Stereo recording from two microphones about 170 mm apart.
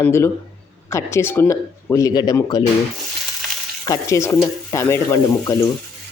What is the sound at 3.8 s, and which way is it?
Speech, 15° left (ahead or behind).